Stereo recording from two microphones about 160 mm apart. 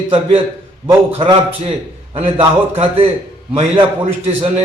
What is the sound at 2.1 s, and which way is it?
Speech, 35° right (ahead or behind).